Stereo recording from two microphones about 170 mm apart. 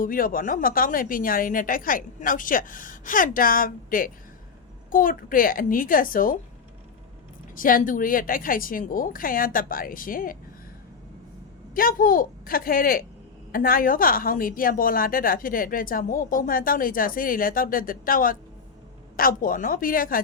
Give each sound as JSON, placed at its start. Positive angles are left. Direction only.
{"t": 0.0, "sound": "a woman's voice", "side_deg": 55}
{"t": 7.5, "sound": "a woman's voice", "side_deg": 55}
{"t": 11.7, "sound": "a woman's voice", "side_deg": 55}